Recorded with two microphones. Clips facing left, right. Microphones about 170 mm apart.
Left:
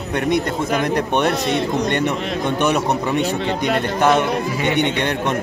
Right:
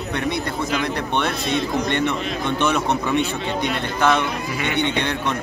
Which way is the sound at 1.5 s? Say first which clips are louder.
Left 2 dB; 65° left (ahead or behind).